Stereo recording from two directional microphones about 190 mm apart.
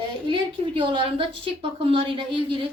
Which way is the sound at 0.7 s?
25° right (ahead or behind).